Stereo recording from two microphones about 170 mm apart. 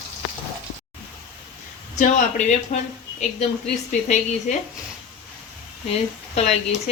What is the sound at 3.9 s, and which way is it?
Speech, 50° left (ahead or behind).